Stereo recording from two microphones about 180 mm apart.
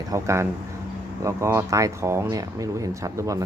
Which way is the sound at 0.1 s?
15° right (ahead or behind).